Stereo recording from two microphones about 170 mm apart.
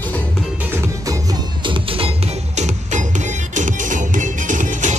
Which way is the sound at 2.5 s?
40° right (ahead or behind).